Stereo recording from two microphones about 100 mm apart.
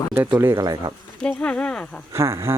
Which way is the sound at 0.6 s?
40° right (ahead or behind).